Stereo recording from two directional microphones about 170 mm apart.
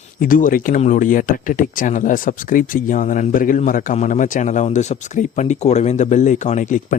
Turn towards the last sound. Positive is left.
turn(degrees=50)  # may be behind; listen again after turning